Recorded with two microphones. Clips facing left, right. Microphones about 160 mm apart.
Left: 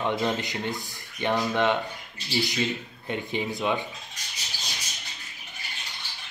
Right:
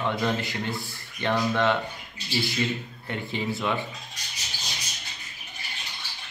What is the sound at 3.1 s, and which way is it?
Speech, 15° left (ahead or behind).